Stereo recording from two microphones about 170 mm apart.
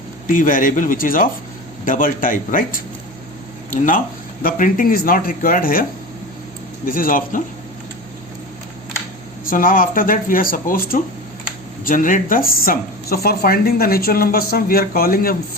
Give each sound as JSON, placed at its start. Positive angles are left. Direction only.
{"t": 0.3, "sound": "a man's voice", "side_deg": 50}
{"t": 6.8, "sound": "a man's voice", "side_deg": 55}
{"t": 9.5, "sound": "speech", "side_deg": 55}